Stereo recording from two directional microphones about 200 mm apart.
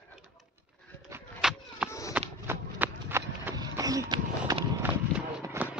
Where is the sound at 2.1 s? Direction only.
10° right (ahead or behind).